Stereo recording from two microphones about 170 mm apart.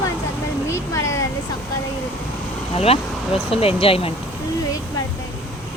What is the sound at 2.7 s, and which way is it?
Speech, 35° left (ahead or behind).